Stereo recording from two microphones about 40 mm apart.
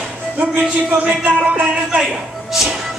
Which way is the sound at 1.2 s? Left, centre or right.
Right.